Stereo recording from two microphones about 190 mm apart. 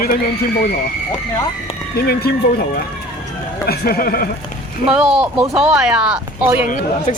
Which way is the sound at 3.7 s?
55° left (ahead or behind).